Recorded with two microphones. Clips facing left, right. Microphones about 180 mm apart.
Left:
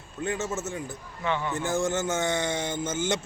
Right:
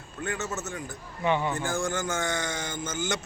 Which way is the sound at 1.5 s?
25° left (ahead or behind).